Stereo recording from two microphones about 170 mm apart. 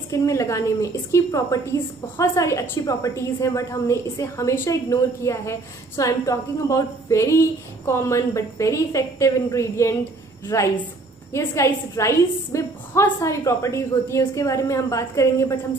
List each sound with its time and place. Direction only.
0.1 s a woman's voice: 20° left (ahead or behind)